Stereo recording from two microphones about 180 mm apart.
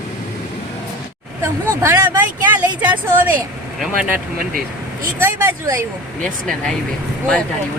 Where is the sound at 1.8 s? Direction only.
15° right (ahead or behind).